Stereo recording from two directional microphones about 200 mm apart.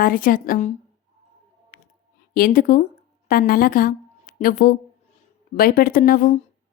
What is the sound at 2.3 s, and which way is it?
A woman's voice, 45° left (ahead or behind).